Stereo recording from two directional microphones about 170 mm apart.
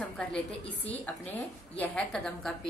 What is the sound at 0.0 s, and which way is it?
A woman's voice, 5° left (ahead or behind).